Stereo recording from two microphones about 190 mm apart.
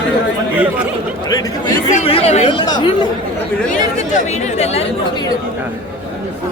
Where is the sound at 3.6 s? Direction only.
40° left (ahead or behind).